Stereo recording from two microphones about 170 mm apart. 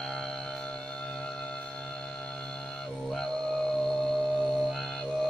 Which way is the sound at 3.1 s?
Centre (ahead or behind).